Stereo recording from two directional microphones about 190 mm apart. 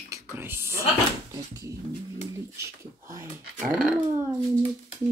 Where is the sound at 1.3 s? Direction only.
20° right (ahead or behind).